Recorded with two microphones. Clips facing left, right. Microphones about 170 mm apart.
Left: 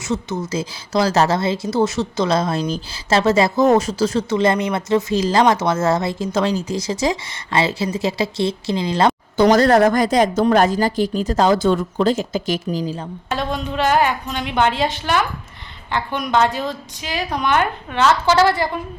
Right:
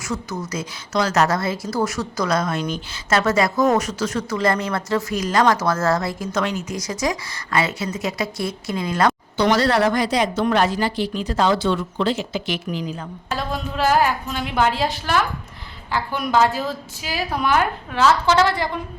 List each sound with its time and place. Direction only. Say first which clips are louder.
0.0 s speech: left 4 dB; 25° left (ahead or behind)
9.4 s speech: left 5 dB; 45° left (ahead or behind)
13.2 s a woman's voice: left 3 dB; centre (ahead or behind)